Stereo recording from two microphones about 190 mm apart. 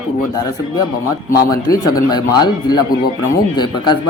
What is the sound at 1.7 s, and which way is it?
Speech, 20° left (ahead or behind).